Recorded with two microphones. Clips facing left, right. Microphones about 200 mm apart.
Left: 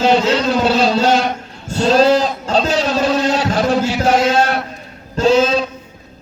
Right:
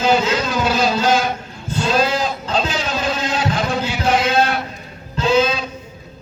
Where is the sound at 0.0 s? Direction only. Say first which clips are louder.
Left 3 dB; 35° left (ahead or behind).